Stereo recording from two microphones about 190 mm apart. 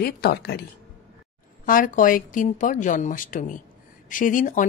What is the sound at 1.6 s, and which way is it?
Speech, 45° left (ahead or behind).